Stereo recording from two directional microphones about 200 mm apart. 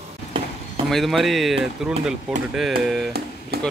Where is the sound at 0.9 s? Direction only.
Centre (ahead or behind).